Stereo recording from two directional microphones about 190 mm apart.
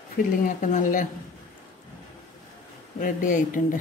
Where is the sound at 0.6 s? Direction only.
45° left (ahead or behind).